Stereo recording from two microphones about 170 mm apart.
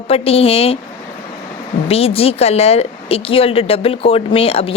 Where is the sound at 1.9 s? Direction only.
35° left (ahead or behind).